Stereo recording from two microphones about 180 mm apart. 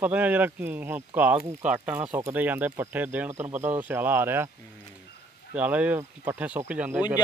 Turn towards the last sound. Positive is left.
turn(degrees=-10)  # may be behind; listen again after turning